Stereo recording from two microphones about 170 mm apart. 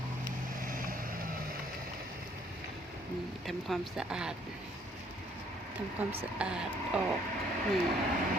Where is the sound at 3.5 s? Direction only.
Centre (ahead or behind).